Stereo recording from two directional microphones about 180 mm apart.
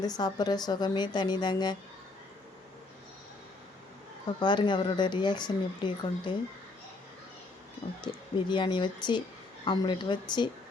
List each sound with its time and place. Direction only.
0.0 s speech: 20° left (ahead or behind)
4.3 s speech: 25° left (ahead or behind)
8.0 s speech: 25° left (ahead or behind)